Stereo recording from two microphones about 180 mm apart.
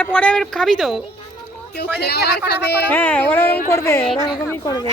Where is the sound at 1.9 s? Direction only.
65° left (ahead or behind).